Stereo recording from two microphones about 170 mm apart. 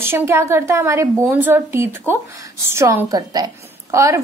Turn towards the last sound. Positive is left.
turn(degrees=-15)  # may be behind; listen again after turning